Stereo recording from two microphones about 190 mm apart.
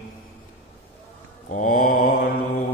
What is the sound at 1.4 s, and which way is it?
Mantra, 45° left (ahead or behind).